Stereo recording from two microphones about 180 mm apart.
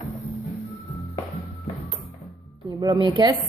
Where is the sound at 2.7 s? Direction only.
20° right (ahead or behind).